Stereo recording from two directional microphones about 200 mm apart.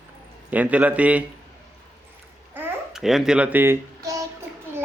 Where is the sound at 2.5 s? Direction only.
5° right (ahead or behind).